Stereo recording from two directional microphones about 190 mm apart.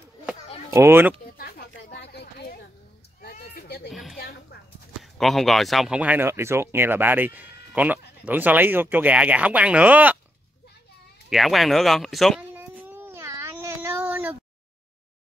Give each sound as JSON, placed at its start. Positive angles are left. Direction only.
{"t": 0.7, "sound": "speech", "side_deg": -15}
{"t": 1.4, "sound": "a sound", "side_deg": 55}
{"t": 3.9, "sound": "a sound", "side_deg": 0}
{"t": 4.2, "sound": "clip-clop", "side_deg": 55}
{"t": 5.0, "sound": "speech", "side_deg": 0}
{"t": 11.2, "sound": "speech", "side_deg": 0}
{"t": 12.5, "sound": "baby cry", "side_deg": -10}